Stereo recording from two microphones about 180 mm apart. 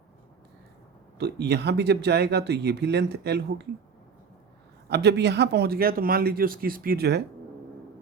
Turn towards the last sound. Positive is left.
turn(degrees=-65)  # may be behind; listen again after turning